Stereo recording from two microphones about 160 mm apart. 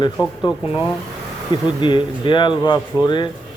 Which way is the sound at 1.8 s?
30° left (ahead or behind).